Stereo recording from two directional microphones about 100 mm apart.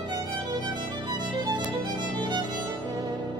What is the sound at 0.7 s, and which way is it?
Music, 50° right (ahead or behind).